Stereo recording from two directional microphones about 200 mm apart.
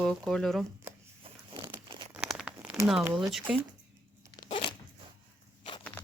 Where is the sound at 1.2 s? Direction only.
20° right (ahead or behind).